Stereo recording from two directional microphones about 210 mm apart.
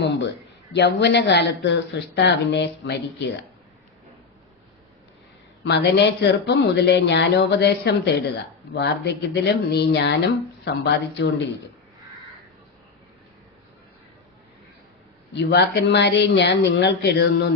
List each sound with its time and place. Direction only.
0.0 s speech: 55° left (ahead or behind)
5.6 s speech: 55° left (ahead or behind)
15.3 s speech: 55° left (ahead or behind)